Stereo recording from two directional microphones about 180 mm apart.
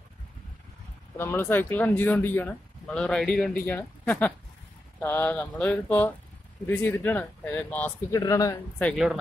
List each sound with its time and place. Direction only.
1.1 s speech: 10° left (ahead or behind)
8.8 s speech: 5° right (ahead or behind)